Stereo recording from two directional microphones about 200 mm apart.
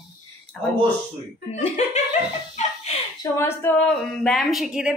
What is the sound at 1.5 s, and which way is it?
Speech, 35° left (ahead or behind).